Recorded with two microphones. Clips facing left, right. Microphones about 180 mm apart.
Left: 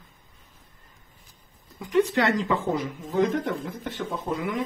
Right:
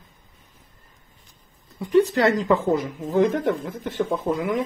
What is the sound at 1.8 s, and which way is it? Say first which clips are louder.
Speech: right 4 dB; 35° right (ahead or behind).